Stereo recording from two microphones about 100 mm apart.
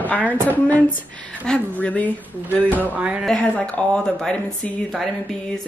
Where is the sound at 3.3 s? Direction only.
10° left (ahead or behind).